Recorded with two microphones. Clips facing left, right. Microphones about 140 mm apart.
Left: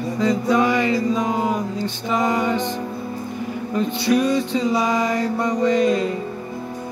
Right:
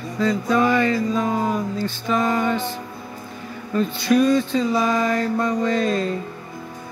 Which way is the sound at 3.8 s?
15° left (ahead or behind).